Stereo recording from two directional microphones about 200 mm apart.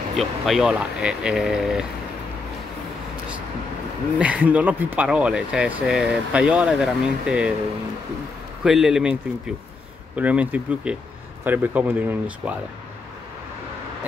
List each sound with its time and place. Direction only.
0.1 s speech: centre (ahead or behind)
4.2 s speech: 5° right (ahead or behind)
8.6 s speech: 5° right (ahead or behind)
10.1 s speech: 5° right (ahead or behind)